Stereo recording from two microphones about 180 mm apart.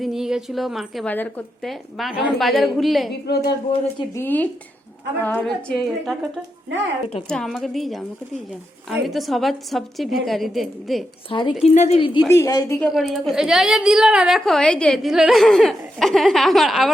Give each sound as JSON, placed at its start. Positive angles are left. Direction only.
{"t": 0.0, "sound": "a woman's voice", "side_deg": 0}
{"t": 3.2, "sound": "speech", "side_deg": 65}
{"t": 4.1, "sound": "a woman's voice", "side_deg": 10}
{"t": 7.3, "sound": "a woman's voice", "side_deg": 0}
{"t": 11.3, "sound": "a woman's voice", "side_deg": 25}
{"t": 12.3, "sound": "a woman's voice", "side_deg": 15}
{"t": 12.9, "sound": "a woman's voice", "side_deg": 0}